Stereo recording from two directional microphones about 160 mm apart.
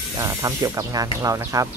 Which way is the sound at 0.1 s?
20° right (ahead or behind).